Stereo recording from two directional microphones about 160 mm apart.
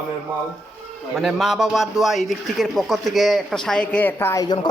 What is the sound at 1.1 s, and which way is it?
A man's voice, centre (ahead or behind).